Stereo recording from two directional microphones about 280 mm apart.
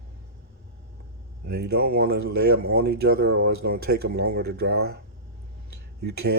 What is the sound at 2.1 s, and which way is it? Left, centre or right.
Speech, right.